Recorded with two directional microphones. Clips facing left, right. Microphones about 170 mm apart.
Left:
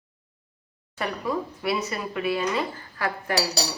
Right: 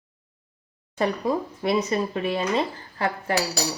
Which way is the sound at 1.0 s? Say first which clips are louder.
Right 4 dB; 35° right (ahead or behind).